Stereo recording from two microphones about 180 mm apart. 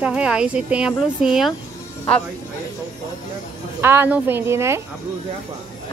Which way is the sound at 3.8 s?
10° right (ahead or behind).